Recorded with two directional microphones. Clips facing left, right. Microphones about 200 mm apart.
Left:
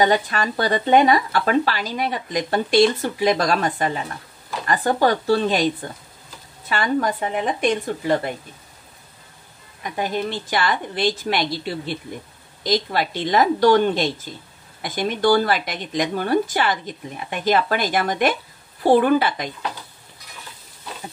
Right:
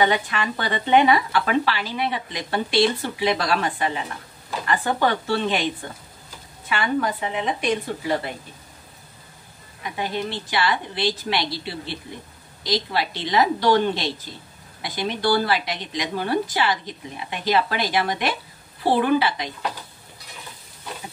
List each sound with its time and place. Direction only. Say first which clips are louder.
0.0 s speech: left 3 dB; 40° left (ahead or behind)
6.7 s a woman's voice: left 2 dB; 40° left (ahead or behind)
9.9 s a woman's voice: left 3 dB; 45° left (ahead or behind)